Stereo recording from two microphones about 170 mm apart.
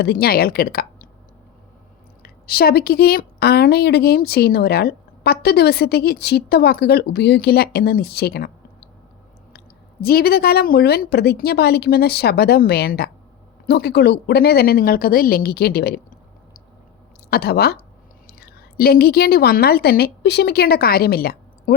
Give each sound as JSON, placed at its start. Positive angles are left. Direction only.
{"t": 0.0, "sound": "a woman's voice", "side_deg": 65}
{"t": 2.2, "sound": "a woman's voice", "side_deg": 65}
{"t": 10.0, "sound": "a woman's voice", "side_deg": 65}
{"t": 17.2, "sound": "a woman's voice", "side_deg": 65}